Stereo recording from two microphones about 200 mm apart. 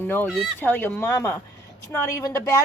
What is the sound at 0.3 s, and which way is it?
Speech, centre (ahead or behind).